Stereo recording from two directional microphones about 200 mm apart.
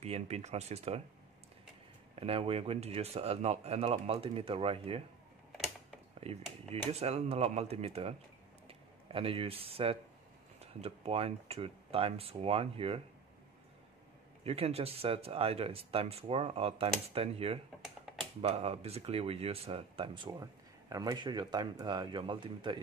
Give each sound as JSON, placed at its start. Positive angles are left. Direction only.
{"t": 0.0, "sound": "speech", "side_deg": -35}
{"t": 2.1, "sound": "speech", "side_deg": -30}
{"t": 6.2, "sound": "speech", "side_deg": -30}
{"t": 14.4, "sound": "speech", "side_deg": -30}